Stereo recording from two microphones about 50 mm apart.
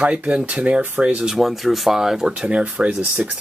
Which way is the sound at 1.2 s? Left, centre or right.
Centre.